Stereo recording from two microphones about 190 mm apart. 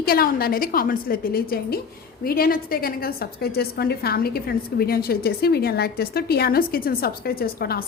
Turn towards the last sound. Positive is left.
turn(degrees=55)  # may be behind; listen again after turning